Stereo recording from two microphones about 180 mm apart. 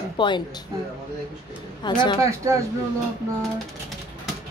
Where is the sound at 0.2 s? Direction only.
25° left (ahead or behind).